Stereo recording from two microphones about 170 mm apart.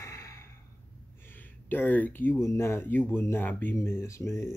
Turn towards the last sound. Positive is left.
turn(degrees=15)  # may be behind; listen again after turning